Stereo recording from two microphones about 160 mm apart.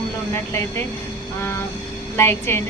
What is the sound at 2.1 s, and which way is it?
Speech, 15° left (ahead or behind).